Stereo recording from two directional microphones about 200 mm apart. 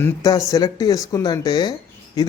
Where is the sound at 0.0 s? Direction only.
15° left (ahead or behind).